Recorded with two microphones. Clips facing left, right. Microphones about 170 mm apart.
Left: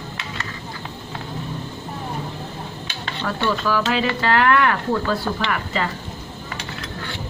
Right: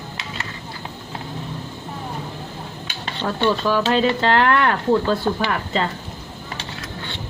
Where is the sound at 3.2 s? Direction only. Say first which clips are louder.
Right 3 dB; 25° right (ahead or behind).